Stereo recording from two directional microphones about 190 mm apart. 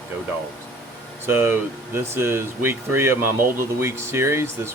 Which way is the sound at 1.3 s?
10° right (ahead or behind).